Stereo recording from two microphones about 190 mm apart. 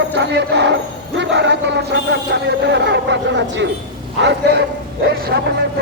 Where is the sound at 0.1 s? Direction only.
65° right (ahead or behind).